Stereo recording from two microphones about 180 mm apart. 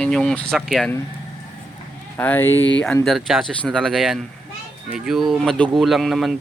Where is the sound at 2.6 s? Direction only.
90° left.